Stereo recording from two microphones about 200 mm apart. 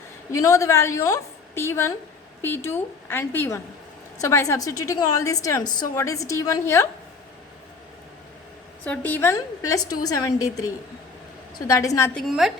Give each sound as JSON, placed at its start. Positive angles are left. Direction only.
{"t": 0.3, "sound": "a woman's voice", "side_deg": 15}
{"t": 8.8, "sound": "a woman's voice", "side_deg": 5}
{"t": 11.7, "sound": "a woman's voice", "side_deg": 15}
{"t": 12.3, "sound": "a woman's voice", "side_deg": 0}